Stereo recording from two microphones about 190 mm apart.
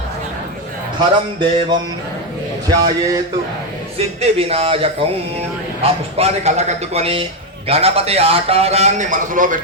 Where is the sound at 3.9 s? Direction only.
30° right (ahead or behind).